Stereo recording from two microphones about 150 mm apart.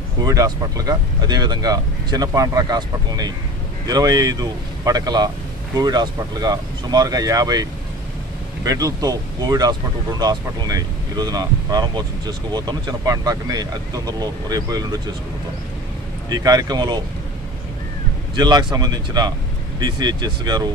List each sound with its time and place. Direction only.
0.2 s speech: 25° right (ahead or behind)
8.6 s speech: 25° right (ahead or behind)
16.3 s speech: 25° right (ahead or behind)
18.3 s speech: 30° right (ahead or behind)